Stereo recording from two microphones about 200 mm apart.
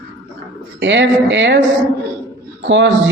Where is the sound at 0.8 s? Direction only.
65° right (ahead or behind).